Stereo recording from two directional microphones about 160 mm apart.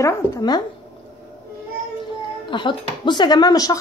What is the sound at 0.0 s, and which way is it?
Speech, 25° left (ahead or behind).